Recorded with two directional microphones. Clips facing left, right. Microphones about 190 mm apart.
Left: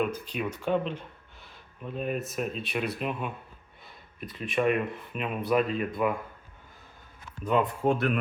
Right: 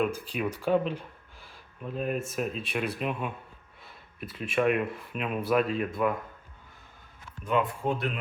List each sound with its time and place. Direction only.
0.0 s speech: 5° right (ahead or behind)
7.9 s speech: 55° left (ahead or behind)